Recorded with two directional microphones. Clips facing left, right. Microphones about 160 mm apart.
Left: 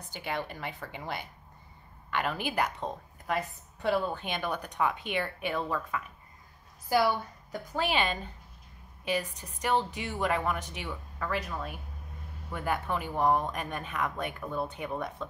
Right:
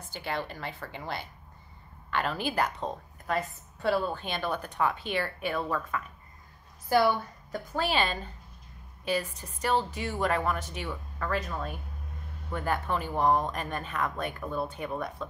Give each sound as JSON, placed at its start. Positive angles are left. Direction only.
{"t": 0.1, "sound": "speech", "side_deg": 15}
{"t": 7.5, "sound": "speech", "side_deg": 15}